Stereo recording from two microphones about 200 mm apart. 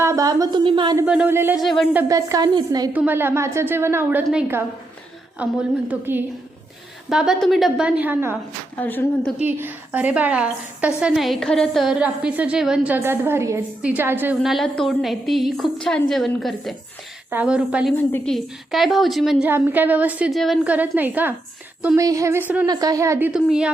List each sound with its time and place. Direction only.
0.0 s a woman's voice: 15° right (ahead or behind)
1.0 s a woman's voice: 5° right (ahead or behind)
1.6 s a woman's voice: centre (ahead or behind); by 2.9 s 20° right (ahead or behind)
2.9 s a woman's voice: 10° right (ahead or behind)
8.7 s a woman's voice: 10° left (ahead or behind)
9.4 s a woman's voice: 10° right (ahead or behind)
17.9 s a woman's voice: 5° left (ahead or behind); by 21.3 s 10° right (ahead or behind)
21.8 s a sound: 5° right (ahead or behind)
22.0 s a woman's voice: 15° right (ahead or behind)